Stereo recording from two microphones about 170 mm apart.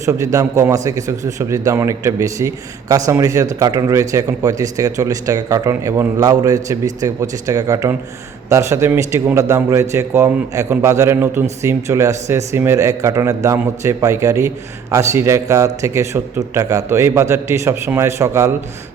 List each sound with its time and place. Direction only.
0.0 s a man's voice: 20° right (ahead or behind)